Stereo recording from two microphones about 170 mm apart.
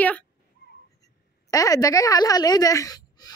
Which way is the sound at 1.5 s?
20° left (ahead or behind).